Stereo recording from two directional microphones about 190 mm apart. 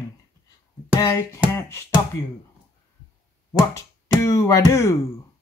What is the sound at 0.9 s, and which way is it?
Music, 15° left (ahead or behind).